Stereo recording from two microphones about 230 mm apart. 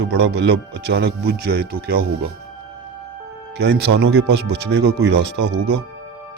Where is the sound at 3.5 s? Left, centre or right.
Right.